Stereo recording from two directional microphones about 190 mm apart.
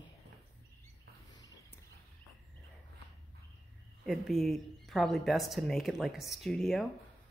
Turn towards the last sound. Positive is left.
turn(degrees=0)  # may be behind; listen again after turning